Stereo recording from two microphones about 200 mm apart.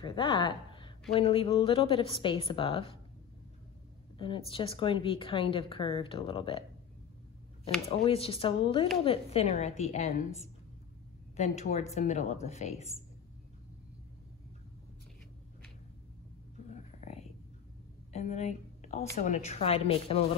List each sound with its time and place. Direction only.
0.0 s a woman's voice: 25° left (ahead or behind)
4.2 s a woman's voice: 25° left (ahead or behind)
7.9 s a woman's voice: 30° left (ahead or behind)
11.3 s speech: 35° left (ahead or behind)
16.7 s whispering: 35° left (ahead or behind)
18.1 s speech: 35° left (ahead or behind)